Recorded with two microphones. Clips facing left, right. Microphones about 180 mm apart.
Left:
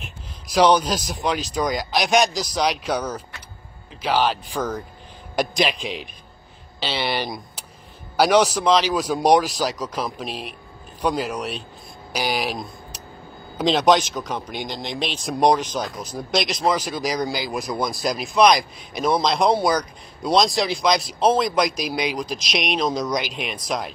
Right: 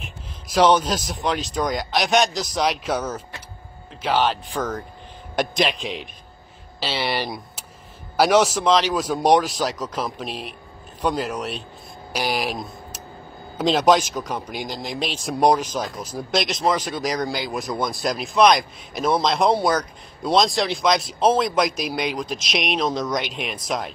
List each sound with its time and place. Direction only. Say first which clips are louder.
0.0 s speech: right 1 dB; centre (ahead or behind)